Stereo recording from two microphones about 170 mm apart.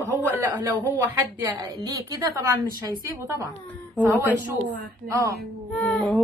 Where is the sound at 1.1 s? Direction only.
20° right (ahead or behind).